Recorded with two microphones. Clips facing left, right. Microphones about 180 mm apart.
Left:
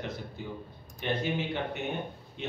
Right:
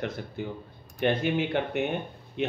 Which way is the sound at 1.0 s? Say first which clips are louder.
Right 6 dB; 65° right (ahead or behind).